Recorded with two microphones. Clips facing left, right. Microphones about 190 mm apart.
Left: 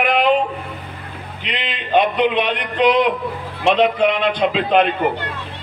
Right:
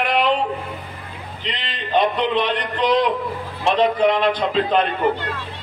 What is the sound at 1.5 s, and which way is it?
A man's voice, 60° left (ahead or behind).